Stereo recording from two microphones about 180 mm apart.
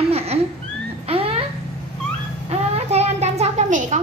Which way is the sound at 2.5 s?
35° right (ahead or behind).